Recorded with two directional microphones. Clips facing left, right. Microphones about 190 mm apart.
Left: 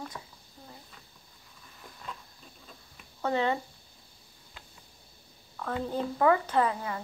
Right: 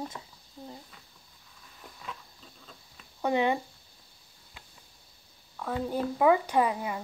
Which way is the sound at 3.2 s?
15° right (ahead or behind).